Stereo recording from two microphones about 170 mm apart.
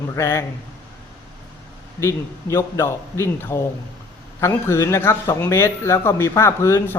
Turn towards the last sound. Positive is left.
turn(degrees=15)  # may be behind; listen again after turning